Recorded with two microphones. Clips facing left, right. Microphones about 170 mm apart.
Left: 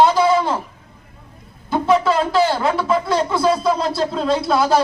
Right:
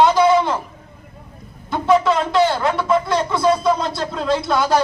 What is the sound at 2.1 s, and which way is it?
Speech, 5° left (ahead or behind).